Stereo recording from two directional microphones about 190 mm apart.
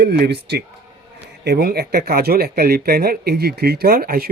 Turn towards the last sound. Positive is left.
turn(degrees=-50)  # may be behind; listen again after turning